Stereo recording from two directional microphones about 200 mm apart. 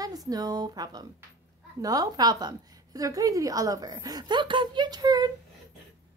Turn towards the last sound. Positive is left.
turn(degrees=-20)  # may be behind; listen again after turning